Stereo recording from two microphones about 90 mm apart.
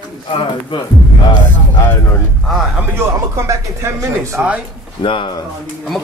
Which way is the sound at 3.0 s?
30° right (ahead or behind).